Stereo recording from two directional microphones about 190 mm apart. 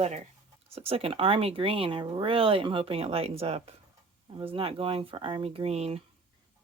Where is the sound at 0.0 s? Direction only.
35° right (ahead or behind).